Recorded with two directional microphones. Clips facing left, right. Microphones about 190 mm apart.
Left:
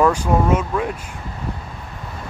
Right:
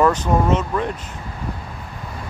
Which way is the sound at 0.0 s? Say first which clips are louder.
Even; 10° left (ahead or behind).